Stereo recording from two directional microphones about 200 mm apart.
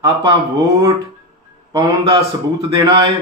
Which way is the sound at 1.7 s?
20° right (ahead or behind).